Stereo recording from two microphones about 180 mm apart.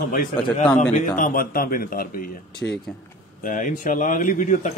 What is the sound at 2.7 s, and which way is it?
Speech, 5° left (ahead or behind).